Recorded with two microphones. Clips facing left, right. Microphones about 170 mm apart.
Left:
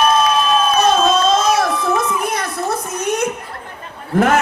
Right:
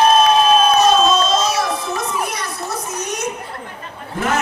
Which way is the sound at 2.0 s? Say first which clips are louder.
Left 4 dB; 55° left (ahead or behind).